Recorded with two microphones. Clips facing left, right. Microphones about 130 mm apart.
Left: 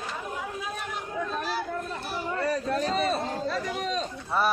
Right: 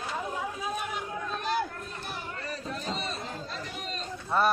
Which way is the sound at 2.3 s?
80° left.